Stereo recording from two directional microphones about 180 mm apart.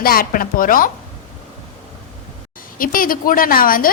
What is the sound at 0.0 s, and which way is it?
Speech, 55° left (ahead or behind).